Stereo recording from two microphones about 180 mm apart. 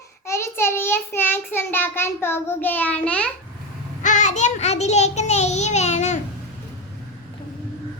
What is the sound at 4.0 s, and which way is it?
Child singing, 45° left (ahead or behind).